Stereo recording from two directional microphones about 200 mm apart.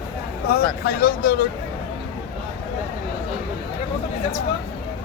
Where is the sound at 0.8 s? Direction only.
50° left (ahead or behind).